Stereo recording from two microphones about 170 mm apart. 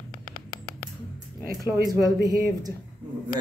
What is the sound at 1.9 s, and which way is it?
Speech, 20° right (ahead or behind).